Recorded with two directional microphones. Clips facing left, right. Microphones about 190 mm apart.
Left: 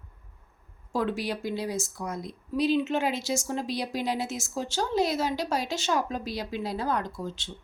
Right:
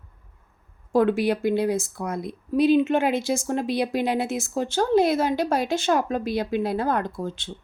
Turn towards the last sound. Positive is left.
turn(degrees=-55)  # may be behind; listen again after turning